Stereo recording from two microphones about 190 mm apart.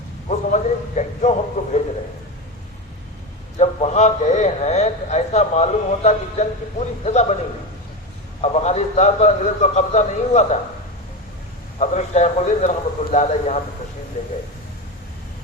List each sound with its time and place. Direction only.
0.3 s a sound: 40° left (ahead or behind)
3.6 s a man's voice: 35° left (ahead or behind)
8.4 s a man's voice: 35° left (ahead or behind)
11.8 s a man's voice: 35° left (ahead or behind)